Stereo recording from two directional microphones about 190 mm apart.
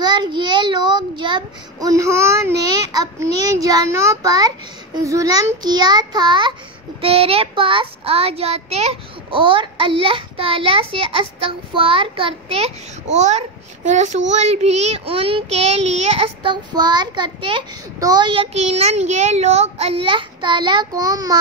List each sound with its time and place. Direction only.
0.0 s child singing: 20° right (ahead or behind)